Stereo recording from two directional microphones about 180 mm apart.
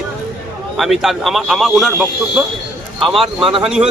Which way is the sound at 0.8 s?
Centre (ahead or behind).